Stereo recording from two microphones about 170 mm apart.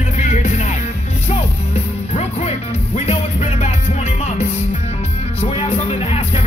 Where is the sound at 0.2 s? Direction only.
45° left (ahead or behind).